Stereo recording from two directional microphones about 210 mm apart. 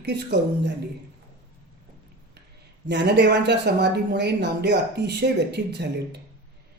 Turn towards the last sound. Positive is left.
turn(degrees=-55)  # may be behind; listen again after turning